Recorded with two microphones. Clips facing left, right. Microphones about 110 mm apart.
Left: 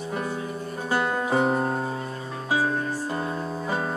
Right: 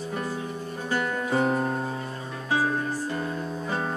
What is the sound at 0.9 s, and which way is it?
Music, 40° left (ahead or behind).